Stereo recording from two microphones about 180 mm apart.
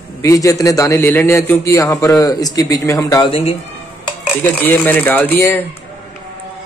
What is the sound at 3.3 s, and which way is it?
Speech, 30° left (ahead or behind).